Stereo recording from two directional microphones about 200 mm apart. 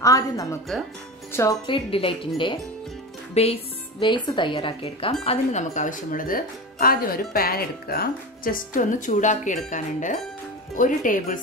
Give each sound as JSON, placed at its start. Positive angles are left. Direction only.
{"t": 0.0, "sound": "speech", "side_deg": 15}
{"t": 1.7, "sound": "speech", "side_deg": 25}